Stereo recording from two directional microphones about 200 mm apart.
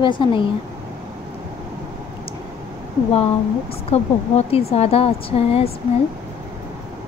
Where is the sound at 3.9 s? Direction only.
30° left (ahead or behind).